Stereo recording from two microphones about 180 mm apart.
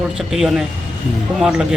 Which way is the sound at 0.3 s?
Centre (ahead or behind).